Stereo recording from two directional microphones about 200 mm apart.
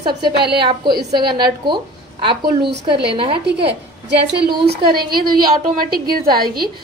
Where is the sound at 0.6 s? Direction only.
25° right (ahead or behind).